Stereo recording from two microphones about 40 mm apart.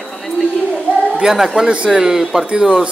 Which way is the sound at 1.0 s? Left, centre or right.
Right.